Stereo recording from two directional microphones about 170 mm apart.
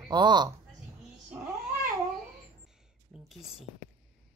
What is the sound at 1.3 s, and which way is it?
Cat, 5° right (ahead or behind).